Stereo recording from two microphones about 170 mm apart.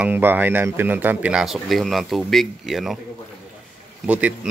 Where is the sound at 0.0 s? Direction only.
10° right (ahead or behind).